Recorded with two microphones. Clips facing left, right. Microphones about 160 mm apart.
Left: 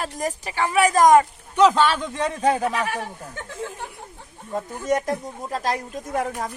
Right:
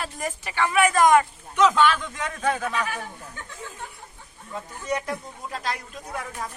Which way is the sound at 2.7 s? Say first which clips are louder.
Left 3 dB; 70° left (ahead or behind).